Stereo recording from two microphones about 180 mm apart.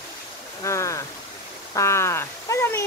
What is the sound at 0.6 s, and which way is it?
Speech, 15° left (ahead or behind).